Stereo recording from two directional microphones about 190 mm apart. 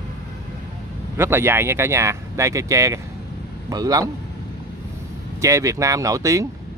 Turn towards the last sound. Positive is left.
turn(degrees=-15)  # may be behind; listen again after turning